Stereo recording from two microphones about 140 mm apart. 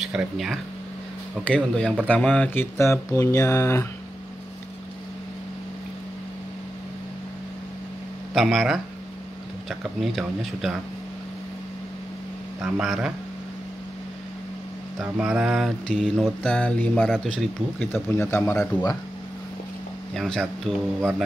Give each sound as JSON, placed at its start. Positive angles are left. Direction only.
{"t": 0.0, "sound": "speech", "side_deg": -5}
{"t": 1.5, "sound": "speech", "side_deg": 10}
{"t": 8.4, "sound": "speech", "side_deg": 0}
{"t": 12.6, "sound": "speech", "side_deg": 0}
{"t": 15.0, "sound": "speech", "side_deg": -5}
{"t": 16.4, "sound": "speech", "side_deg": 10}
{"t": 17.7, "sound": "speech", "side_deg": 15}
{"t": 20.2, "sound": "speech", "side_deg": 5}